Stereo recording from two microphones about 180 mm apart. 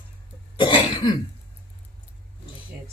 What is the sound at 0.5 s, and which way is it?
Cough, 25° left (ahead or behind).